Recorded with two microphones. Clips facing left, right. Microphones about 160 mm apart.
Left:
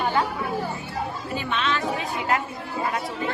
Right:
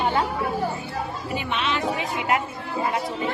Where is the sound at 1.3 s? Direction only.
15° right (ahead or behind).